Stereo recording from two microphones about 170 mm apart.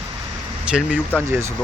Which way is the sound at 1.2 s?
15° right (ahead or behind).